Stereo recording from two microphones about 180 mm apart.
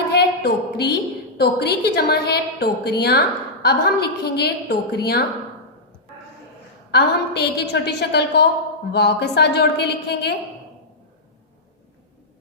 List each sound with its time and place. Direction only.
0.1 s a sound: 65° left (ahead or behind)
1.4 s a woman's voice: 65° left (ahead or behind)
6.9 s a woman's voice: 65° left (ahead or behind)